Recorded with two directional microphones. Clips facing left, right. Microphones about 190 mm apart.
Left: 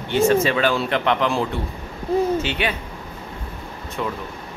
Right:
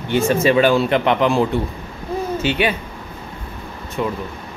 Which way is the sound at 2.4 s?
5° right (ahead or behind).